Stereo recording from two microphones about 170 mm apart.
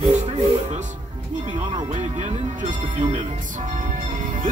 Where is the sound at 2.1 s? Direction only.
40° right (ahead or behind).